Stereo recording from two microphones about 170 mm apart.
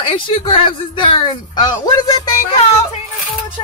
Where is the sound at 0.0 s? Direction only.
30° left (ahead or behind).